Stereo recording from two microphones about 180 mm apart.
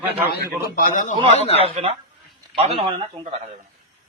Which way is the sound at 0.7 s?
50° left (ahead or behind).